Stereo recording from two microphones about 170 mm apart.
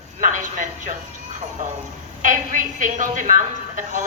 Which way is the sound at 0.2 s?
50° right (ahead or behind).